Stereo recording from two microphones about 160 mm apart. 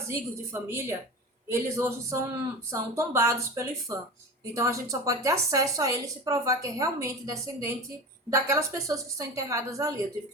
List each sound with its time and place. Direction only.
0.1 s a woman's voice: 15° right (ahead or behind)